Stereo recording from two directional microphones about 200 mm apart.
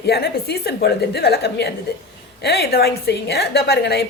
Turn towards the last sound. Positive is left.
turn(degrees=55)  # may be behind; listen again after turning